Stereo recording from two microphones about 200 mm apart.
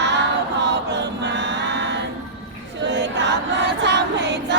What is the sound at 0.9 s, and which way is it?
Chant, 60° right (ahead or behind).